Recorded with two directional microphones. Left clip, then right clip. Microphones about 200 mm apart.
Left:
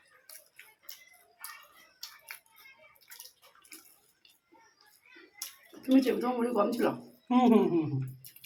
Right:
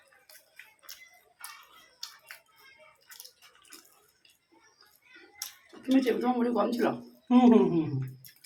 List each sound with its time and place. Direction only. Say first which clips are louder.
0.9 s a sound: right 3 dB; 15° right (ahead or behind)
5.8 s speech: right 1 dB; 5° left (ahead or behind)
7.3 s speech: right 3 dB; 15° right (ahead or behind)